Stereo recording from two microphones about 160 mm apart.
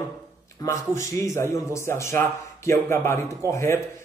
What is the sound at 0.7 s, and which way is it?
A man's voice, 20° left (ahead or behind).